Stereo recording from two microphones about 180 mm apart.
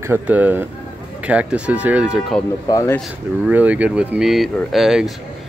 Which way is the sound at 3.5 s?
10° right (ahead or behind).